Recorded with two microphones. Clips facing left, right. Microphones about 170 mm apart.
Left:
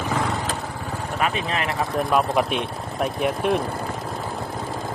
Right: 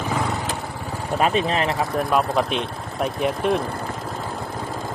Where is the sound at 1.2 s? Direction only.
30° right (ahead or behind).